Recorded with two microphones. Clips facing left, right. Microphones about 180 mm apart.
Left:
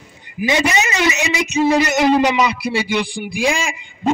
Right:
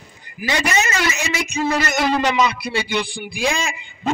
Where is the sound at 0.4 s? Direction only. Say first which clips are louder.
Left 4 dB; 20° left (ahead or behind).